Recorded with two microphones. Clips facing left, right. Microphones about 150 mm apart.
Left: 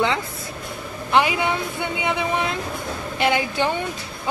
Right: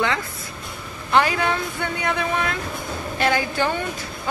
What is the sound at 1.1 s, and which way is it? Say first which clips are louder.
Speech: even; 15° left (ahead or behind).